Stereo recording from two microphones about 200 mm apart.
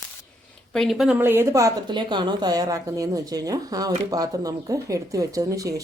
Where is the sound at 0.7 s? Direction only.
Centre (ahead or behind).